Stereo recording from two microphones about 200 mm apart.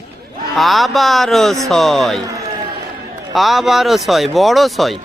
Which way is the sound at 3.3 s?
Centre (ahead or behind).